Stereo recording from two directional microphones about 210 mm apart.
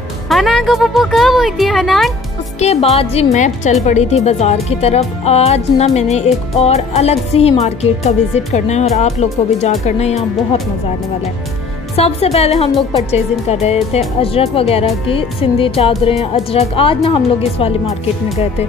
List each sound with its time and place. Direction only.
0.3 s speech: centre (ahead or behind)
2.6 s speech: 30° left (ahead or behind)
11.9 s speech: 30° left (ahead or behind)